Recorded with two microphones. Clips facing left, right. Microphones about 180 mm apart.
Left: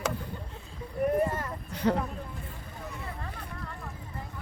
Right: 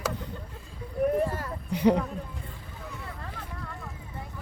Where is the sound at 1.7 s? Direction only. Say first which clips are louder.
Right 5 dB; 15° right (ahead or behind).